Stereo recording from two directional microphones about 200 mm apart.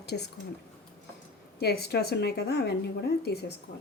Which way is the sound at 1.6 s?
55° left (ahead or behind).